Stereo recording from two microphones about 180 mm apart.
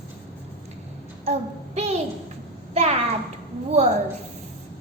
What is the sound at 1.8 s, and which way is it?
Speech, 35° right (ahead or behind).